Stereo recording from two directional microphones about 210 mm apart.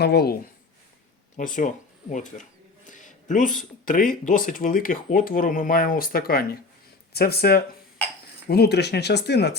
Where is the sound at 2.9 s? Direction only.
35° left (ahead or behind).